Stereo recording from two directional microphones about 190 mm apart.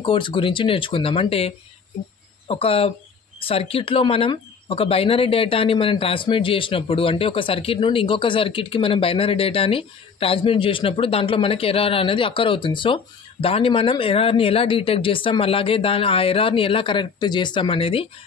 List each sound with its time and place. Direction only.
0.0 s speech: 25° left (ahead or behind)